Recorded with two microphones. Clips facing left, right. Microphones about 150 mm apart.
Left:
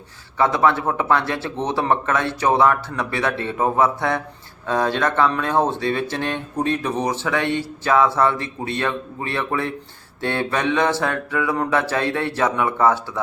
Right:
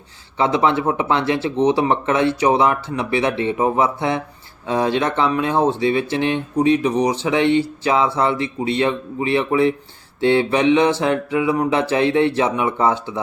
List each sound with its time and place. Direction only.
0.3 s speech: 20° right (ahead or behind)